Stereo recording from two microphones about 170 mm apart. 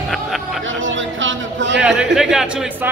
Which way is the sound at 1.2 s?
90° right.